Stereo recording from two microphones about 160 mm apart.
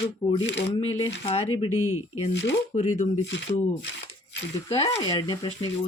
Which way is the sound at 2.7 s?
45° left (ahead or behind).